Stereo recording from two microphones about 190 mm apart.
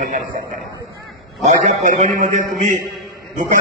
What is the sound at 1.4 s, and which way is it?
A man's voice, 40° right (ahead or behind).